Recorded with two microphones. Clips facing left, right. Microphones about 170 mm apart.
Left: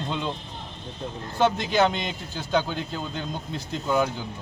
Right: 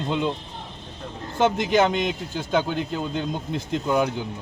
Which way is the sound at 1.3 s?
15° right (ahead or behind).